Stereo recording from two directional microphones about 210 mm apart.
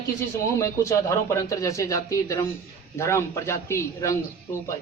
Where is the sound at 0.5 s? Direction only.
15° left (ahead or behind).